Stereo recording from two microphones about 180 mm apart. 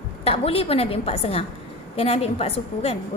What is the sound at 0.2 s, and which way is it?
A woman's voice, 30° left (ahead or behind).